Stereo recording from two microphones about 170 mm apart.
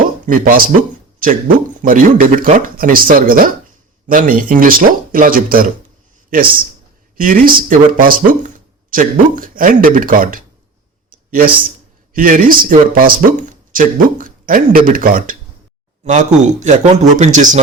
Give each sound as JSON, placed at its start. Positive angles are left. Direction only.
{"t": 0.3, "sound": "a man's voice", "side_deg": -55}
{"t": 11.1, "sound": "a sound", "side_deg": -55}
{"t": 12.1, "sound": "speech", "side_deg": -55}